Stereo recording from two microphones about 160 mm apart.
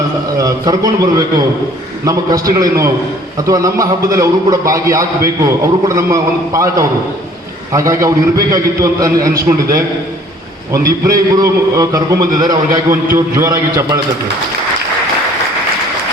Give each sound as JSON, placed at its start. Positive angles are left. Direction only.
{"t": 0.3, "sound": "a man's voice", "side_deg": -20}